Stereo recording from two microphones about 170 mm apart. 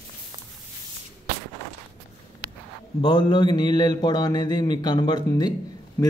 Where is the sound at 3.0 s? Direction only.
25° left (ahead or behind).